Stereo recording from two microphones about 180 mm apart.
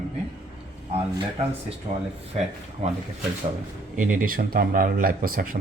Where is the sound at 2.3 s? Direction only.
35° right (ahead or behind).